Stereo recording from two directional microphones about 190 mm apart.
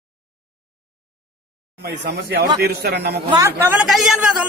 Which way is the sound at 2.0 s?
60° right (ahead or behind).